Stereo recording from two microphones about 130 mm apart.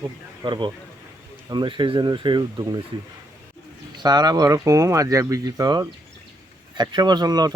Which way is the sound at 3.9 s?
35° right (ahead or behind).